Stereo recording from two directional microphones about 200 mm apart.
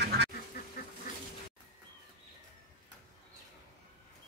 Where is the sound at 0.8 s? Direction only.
50° left (ahead or behind).